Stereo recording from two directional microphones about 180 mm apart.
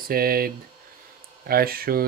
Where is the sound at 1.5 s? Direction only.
55° right (ahead or behind).